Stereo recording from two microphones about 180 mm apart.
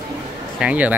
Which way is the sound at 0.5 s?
5° right (ahead or behind).